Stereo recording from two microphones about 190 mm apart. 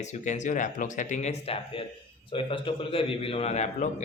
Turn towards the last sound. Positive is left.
turn(degrees=35)  # may be behind; listen again after turning